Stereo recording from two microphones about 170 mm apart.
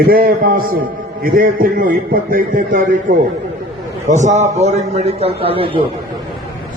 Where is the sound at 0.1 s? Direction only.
60° right (ahead or behind); by 5.8 s 30° right (ahead or behind).